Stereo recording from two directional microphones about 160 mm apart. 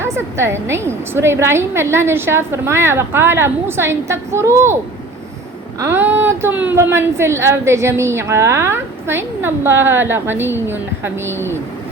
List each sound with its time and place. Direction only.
0.0 s a woman's voice: 15° right (ahead or behind)
5.8 s a woman's voice: 15° right (ahead or behind)